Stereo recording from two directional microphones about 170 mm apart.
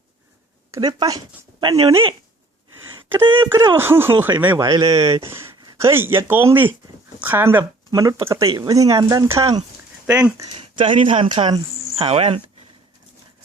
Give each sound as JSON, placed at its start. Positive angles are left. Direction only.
{"t": 0.7, "sound": "speech", "side_deg": -25}
{"t": 3.2, "sound": "speech", "side_deg": -30}
{"t": 3.5, "sound": "speech", "side_deg": -15}
{"t": 4.6, "sound": "speech", "side_deg": -25}
{"t": 10.1, "sound": "speech", "side_deg": -5}
{"t": 10.5, "sound": "speech", "side_deg": -30}